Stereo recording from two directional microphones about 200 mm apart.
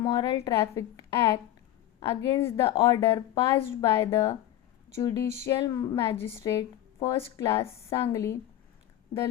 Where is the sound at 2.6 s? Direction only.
20° left (ahead or behind).